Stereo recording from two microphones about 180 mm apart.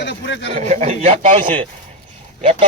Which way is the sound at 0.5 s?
40° right (ahead or behind).